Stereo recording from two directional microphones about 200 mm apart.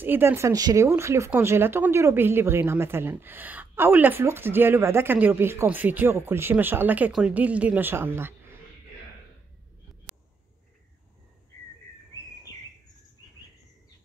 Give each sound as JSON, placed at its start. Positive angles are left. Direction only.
{"t": 0.0, "sound": "speech", "side_deg": -10}